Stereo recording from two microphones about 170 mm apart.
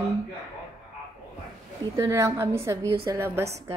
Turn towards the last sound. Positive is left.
turn(degrees=-15)  # may be behind; listen again after turning